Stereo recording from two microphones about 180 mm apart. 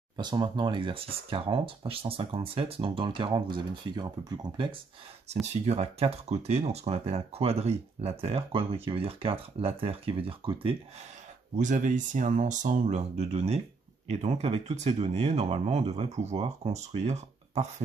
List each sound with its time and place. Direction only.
0.2 s speech: 25° right (ahead or behind)
5.5 s speech: 35° right (ahead or behind)
11.5 s speech: 45° right (ahead or behind)